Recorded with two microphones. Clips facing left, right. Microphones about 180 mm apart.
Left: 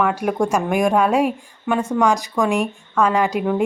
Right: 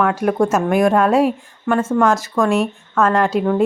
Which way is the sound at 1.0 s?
10° left (ahead or behind).